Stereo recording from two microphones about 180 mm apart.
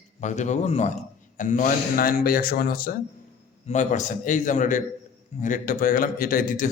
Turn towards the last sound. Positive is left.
turn(degrees=50)  # may be behind; listen again after turning